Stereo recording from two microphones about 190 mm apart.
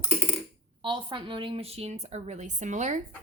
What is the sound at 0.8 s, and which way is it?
A woman's voice, 25° right (ahead or behind).